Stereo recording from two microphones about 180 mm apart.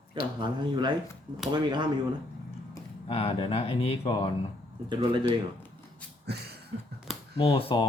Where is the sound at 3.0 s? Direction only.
35° left (ahead or behind).